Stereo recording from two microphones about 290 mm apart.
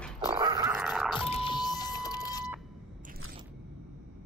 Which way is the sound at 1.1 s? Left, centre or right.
Centre.